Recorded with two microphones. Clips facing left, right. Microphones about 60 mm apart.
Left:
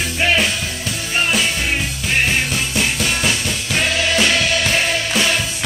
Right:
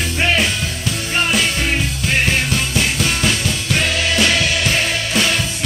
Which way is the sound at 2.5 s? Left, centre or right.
Centre.